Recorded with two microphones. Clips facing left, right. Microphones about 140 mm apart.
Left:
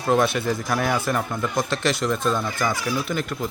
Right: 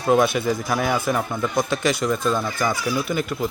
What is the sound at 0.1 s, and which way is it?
Speech, 5° right (ahead or behind).